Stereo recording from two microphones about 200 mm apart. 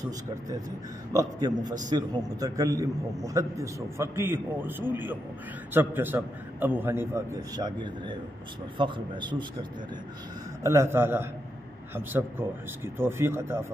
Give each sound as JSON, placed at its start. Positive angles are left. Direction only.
{"t": 1.1, "sound": "a man's voice", "side_deg": -20}
{"t": 7.5, "sound": "a man's voice", "side_deg": -20}